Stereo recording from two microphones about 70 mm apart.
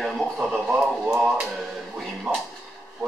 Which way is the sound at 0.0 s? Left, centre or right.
Centre.